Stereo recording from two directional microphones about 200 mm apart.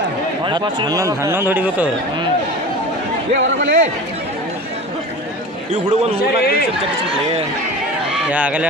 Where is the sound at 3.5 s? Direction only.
65° right (ahead or behind).